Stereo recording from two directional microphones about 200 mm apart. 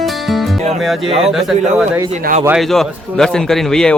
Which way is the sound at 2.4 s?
Centre (ahead or behind).